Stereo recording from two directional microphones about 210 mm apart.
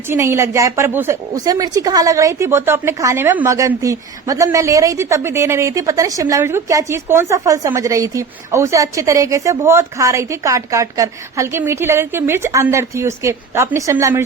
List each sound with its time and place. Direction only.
0.1 s a woman's voice: 15° right (ahead or behind)